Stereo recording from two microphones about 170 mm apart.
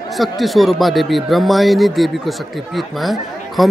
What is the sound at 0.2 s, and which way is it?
Speech, centre (ahead or behind).